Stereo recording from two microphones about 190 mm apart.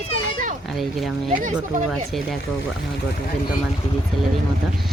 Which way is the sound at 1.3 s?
40° right (ahead or behind).